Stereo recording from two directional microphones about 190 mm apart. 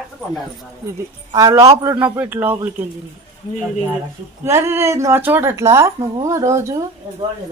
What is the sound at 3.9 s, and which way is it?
Speech, 15° right (ahead or behind).